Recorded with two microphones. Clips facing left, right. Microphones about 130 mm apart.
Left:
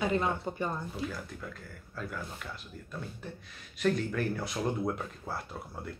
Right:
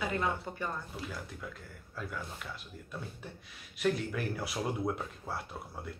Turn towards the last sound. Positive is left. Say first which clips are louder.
# left 1 dB
turn(degrees=0)  # may be behind; listen again after turning